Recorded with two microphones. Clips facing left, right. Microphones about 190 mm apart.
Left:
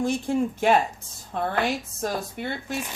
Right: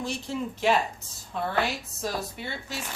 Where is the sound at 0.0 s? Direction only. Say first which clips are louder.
Left 8 dB; 50° left (ahead or behind).